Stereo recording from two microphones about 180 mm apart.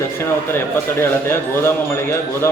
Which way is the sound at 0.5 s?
15° left (ahead or behind).